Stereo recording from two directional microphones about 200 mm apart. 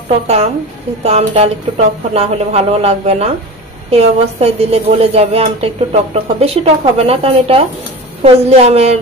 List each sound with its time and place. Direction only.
1.0 s a woman's voice: 35° right (ahead or behind)